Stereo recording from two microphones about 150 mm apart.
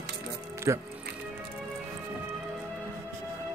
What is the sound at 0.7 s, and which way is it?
Speech, 20° right (ahead or behind).